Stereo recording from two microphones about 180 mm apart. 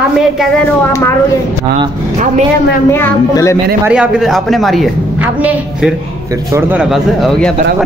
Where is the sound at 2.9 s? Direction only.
15° left (ahead or behind).